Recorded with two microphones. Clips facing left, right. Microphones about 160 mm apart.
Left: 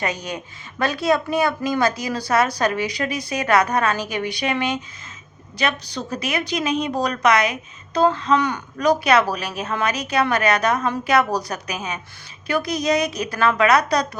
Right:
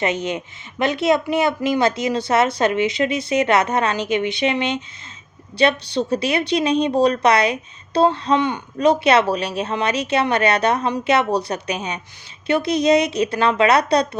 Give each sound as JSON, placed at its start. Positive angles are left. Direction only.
{"t": 0.0, "sound": "a woman's voice", "side_deg": -25}